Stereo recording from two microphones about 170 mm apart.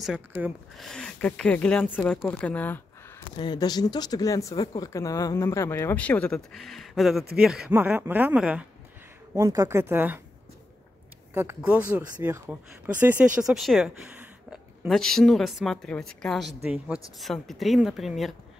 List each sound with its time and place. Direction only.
0.0 s speech: 10° right (ahead or behind)
0.7 s speech: 5° left (ahead or behind)
3.3 s speech: 25° left (ahead or behind); by 8.6 s 5° right (ahead or behind)
9.3 s speech: 20° right (ahead or behind)
11.3 s speech: 10° right (ahead or behind)
14.9 s a woman's voice: centre (ahead or behind)